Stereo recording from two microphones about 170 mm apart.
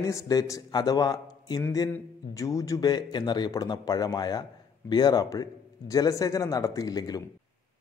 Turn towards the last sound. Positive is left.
turn(degrees=20)  # may be behind; listen again after turning